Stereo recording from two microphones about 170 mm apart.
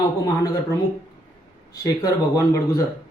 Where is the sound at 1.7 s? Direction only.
20° left (ahead or behind).